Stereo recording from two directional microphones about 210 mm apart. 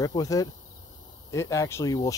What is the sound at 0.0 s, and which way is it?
Speech, 15° left (ahead or behind).